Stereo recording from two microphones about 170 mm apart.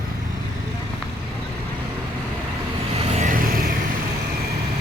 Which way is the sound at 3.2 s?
55° right (ahead or behind).